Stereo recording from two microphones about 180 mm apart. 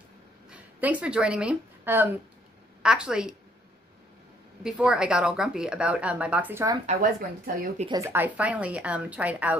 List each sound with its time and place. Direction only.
0.5 s speech: 10° right (ahead or behind)
4.6 s a woman's voice: 5° right (ahead or behind)
6.9 s speech: 45° right (ahead or behind)
7.9 s a woman's voice: 15° right (ahead or behind)